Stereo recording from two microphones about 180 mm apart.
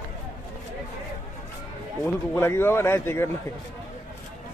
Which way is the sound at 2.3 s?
15° left (ahead or behind).